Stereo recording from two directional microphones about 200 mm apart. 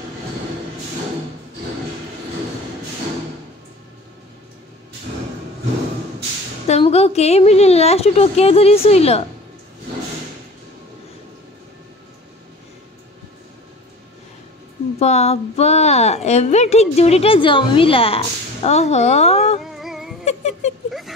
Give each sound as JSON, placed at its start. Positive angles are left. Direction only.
{"t": 6.7, "sound": "a woman's voice", "side_deg": 30}
{"t": 15.0, "sound": "a woman's voice", "side_deg": 35}
{"t": 19.6, "sound": "music", "side_deg": 0}
{"t": 20.2, "sound": "a sound", "side_deg": 35}